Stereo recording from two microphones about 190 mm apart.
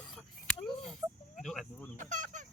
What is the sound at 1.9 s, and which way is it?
Fowl, 40° right (ahead or behind).